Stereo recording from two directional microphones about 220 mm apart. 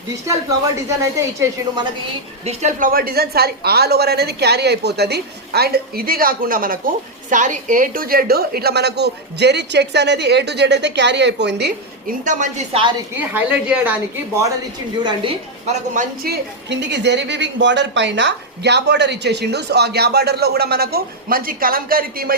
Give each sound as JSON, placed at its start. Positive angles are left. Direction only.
{"t": 1.4, "sound": "a woman's voice", "side_deg": -20}
{"t": 2.4, "sound": "a woman's voice", "side_deg": -30}
{"t": 13.1, "sound": "a woman's voice", "side_deg": -10}
{"t": 15.0, "sound": "a woman's voice", "side_deg": -25}
{"t": 16.2, "sound": "a woman's voice", "side_deg": -50}